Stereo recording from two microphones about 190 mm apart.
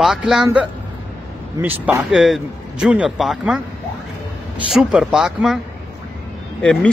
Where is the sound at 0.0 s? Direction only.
Centre (ahead or behind).